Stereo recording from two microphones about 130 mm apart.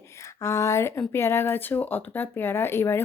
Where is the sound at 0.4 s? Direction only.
20° left (ahead or behind).